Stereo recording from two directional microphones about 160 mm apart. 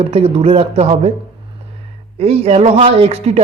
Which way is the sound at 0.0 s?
40° right (ahead or behind).